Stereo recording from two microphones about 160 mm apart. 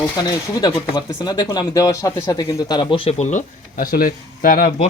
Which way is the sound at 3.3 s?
55° left (ahead or behind).